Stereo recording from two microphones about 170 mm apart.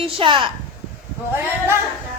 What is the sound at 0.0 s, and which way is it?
Speech, 30° right (ahead or behind).